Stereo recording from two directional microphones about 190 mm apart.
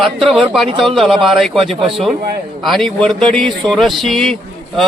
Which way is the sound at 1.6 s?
30° right (ahead or behind).